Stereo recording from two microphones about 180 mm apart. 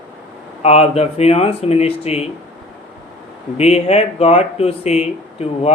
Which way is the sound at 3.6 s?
35° left (ahead or behind).